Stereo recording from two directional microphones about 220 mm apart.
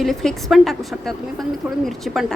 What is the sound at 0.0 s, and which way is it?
A woman's voice, centre (ahead or behind).